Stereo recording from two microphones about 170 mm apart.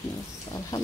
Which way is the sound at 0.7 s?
20° left (ahead or behind).